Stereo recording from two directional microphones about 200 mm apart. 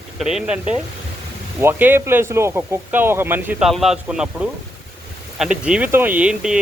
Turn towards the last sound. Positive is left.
turn(degrees=-5)  # may be behind; listen again after turning